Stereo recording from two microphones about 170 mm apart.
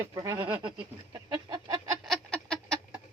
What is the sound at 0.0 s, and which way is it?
Speech, 20° right (ahead or behind).